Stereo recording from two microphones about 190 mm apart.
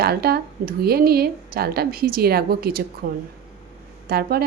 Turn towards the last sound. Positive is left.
turn(degrees=-55)  # may be behind; listen again after turning